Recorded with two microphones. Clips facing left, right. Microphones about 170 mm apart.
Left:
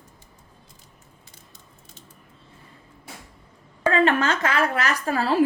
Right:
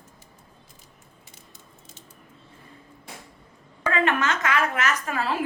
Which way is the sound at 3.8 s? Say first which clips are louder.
Left 4 dB; 30° left (ahead or behind).